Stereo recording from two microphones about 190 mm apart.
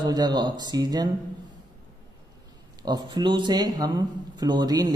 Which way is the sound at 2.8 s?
20° right (ahead or behind).